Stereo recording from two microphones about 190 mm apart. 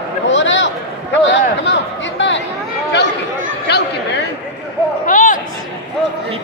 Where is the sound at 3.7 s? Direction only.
60° left (ahead or behind).